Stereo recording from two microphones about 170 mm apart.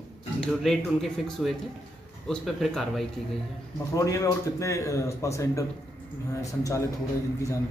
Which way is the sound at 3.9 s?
20° left (ahead or behind).